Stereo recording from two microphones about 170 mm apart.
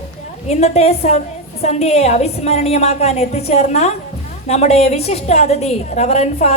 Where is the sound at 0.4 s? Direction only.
40° left (ahead or behind).